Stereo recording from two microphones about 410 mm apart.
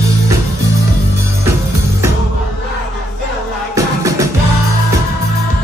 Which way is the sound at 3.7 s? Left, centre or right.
Centre.